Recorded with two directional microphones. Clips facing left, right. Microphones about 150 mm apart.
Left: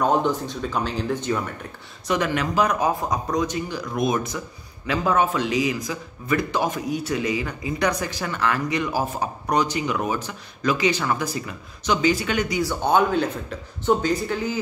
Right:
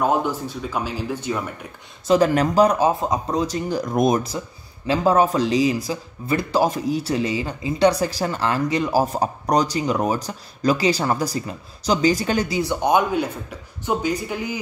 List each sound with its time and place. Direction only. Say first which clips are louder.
0.0 s speech: even; 10° right (ahead or behind)
2.0 s speech: right 6 dB; 35° right (ahead or behind)
12.8 s speech: even; 10° right (ahead or behind)